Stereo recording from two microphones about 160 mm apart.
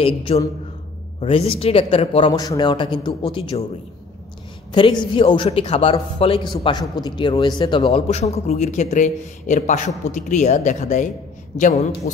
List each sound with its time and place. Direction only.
0.3 s a man's voice: 40° left (ahead or behind)
4.7 s a man's voice: 30° left (ahead or behind); by 11.1 s 50° left (ahead or behind)